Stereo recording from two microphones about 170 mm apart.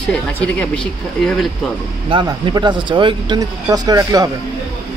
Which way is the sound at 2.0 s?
30° right (ahead or behind).